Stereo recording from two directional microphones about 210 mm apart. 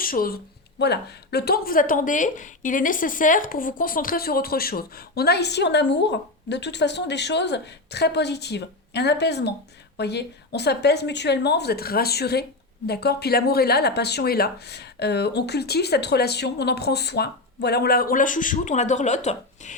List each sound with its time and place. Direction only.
0.0 s speech: 45° left (ahead or behind)